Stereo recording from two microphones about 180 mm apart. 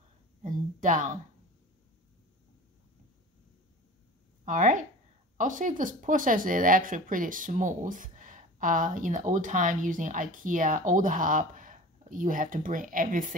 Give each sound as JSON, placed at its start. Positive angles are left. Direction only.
{"t": 0.4, "sound": "a woman's voice", "side_deg": -45}
{"t": 4.5, "sound": "speech", "side_deg": -45}